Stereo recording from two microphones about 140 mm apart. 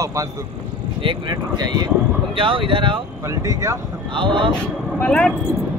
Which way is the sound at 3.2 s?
25° right (ahead or behind).